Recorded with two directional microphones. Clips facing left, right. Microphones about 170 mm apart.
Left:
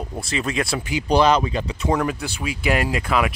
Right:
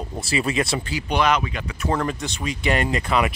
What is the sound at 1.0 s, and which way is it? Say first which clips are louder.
Speech: left 5 dB; 35° left (ahead or behind).